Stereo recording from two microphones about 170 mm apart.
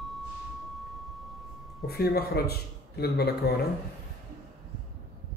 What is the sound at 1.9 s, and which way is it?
A man's voice, 65° left (ahead or behind).